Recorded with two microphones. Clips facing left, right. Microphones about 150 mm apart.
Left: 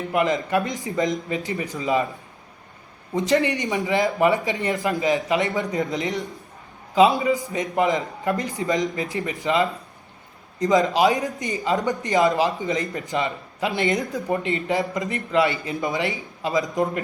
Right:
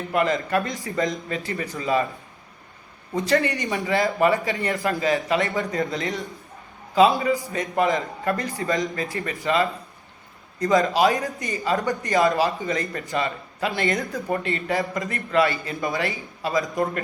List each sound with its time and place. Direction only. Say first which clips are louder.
0.1 s speech: even; 15° left (ahead or behind)
3.2 s speech: left 1 dB; 20° left (ahead or behind)